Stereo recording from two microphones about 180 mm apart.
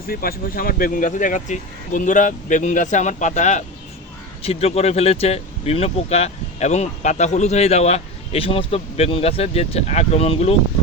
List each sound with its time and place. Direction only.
0.1 s speech: 55° left (ahead or behind); by 10.5 s 35° left (ahead or behind)